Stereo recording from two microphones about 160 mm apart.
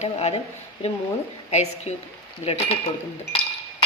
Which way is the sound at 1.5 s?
45° left (ahead or behind).